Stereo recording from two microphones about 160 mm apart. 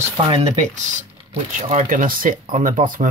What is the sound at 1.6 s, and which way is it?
Speech, 55° right (ahead or behind).